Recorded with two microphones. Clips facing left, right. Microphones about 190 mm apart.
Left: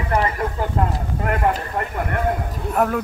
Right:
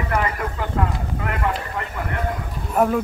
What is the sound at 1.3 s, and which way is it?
Speech, 45° left (ahead or behind).